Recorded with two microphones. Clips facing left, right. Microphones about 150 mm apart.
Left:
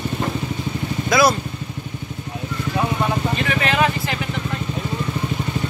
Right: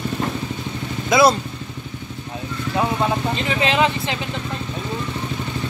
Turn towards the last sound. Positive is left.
turn(degrees=-20)  # may be behind; listen again after turning